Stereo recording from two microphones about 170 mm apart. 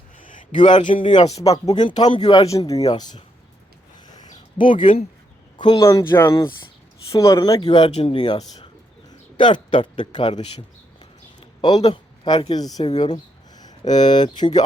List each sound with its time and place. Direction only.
0.2 s a sound: 50° left (ahead or behind)
0.9 s speech: 30° left (ahead or behind)
1.4 s a man's voice: 20° left (ahead or behind)
4.5 s speech: 30° left (ahead or behind)
4.8 s speech: 50° left (ahead or behind)
5.5 s a man's voice: 25° left (ahead or behind)
6.2 s a man's voice: 25° left (ahead or behind)
7.9 s a man's voice: 35° left (ahead or behind)
11.3 s a sound: 25° left (ahead or behind)
11.9 s speech: 30° left (ahead or behind)